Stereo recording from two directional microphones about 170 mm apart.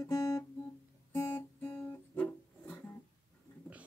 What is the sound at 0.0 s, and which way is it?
Guitar, 20° left (ahead or behind).